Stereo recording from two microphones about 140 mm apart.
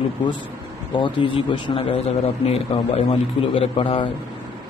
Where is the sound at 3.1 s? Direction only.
40° left (ahead or behind).